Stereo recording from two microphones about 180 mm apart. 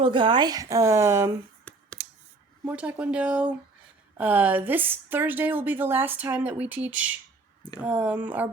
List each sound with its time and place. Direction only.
0.0 s speech: 25° right (ahead or behind)
1.7 s a sound: 5° left (ahead or behind)
2.6 s a woman's voice: 10° right (ahead or behind)